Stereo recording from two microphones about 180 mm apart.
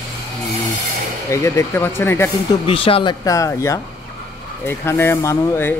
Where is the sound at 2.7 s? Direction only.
30° left (ahead or behind).